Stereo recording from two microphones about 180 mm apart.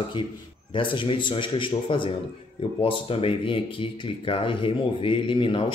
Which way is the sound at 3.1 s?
30° left (ahead or behind).